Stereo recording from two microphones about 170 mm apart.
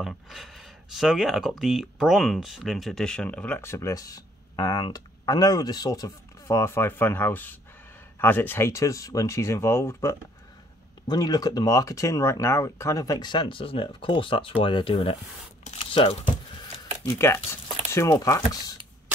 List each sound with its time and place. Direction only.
0.0 s speech: centre (ahead or behind); by 15.1 s 30° left (ahead or behind)
15.6 s tearing: 35° left (ahead or behind)
17.5 s a sound: 15° left (ahead or behind)
18.2 s speech: 20° left (ahead or behind)